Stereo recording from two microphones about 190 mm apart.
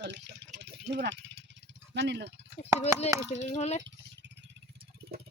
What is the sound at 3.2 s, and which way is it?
Speech, 35° left (ahead or behind).